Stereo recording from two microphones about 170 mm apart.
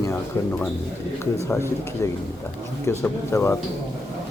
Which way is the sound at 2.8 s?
15° left (ahead or behind).